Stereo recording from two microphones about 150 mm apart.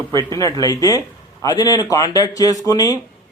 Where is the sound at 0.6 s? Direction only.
25° left (ahead or behind).